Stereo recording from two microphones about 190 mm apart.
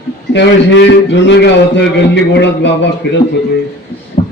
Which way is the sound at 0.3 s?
70° left (ahead or behind).